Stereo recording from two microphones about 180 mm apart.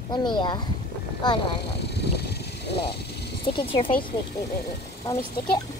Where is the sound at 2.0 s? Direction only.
65° left (ahead or behind).